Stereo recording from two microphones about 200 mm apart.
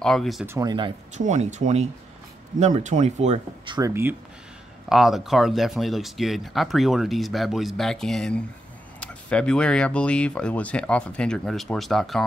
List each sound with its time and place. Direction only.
0.0 s speech: centre (ahead or behind)
0.5 s speech: 20° right (ahead or behind)
1.1 s speech: 35° right (ahead or behind)
3.7 s speech: 15° right (ahead or behind)
4.8 s speech: centre (ahead or behind)